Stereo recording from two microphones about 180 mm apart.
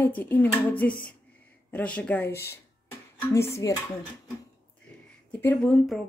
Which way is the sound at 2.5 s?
15° left (ahead or behind).